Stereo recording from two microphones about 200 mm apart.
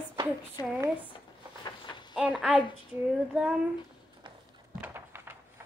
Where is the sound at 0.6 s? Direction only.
20° left (ahead or behind).